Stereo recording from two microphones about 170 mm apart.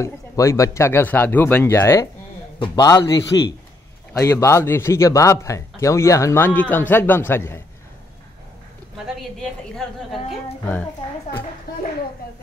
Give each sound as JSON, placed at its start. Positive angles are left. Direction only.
{"t": 0.0, "sound": "a man's voice", "side_deg": 20}
{"t": 8.9, "sound": "a woman's voice", "side_deg": 0}